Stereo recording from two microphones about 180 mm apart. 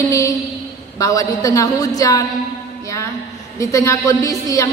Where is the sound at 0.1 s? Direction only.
15° left (ahead or behind).